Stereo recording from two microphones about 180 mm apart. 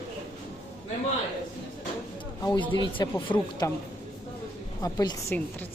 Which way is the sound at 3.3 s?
10° left (ahead or behind).